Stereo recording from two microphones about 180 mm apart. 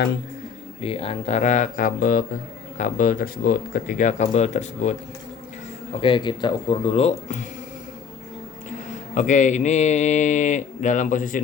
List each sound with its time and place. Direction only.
0.8 s speech: 30° left (ahead or behind)
6.0 s speech: 25° left (ahead or behind)
9.1 s speech: 45° left (ahead or behind)